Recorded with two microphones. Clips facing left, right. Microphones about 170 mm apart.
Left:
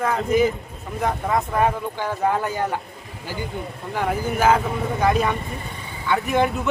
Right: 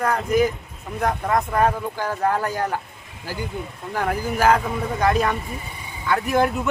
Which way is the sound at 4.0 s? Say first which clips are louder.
Even; centre (ahead or behind).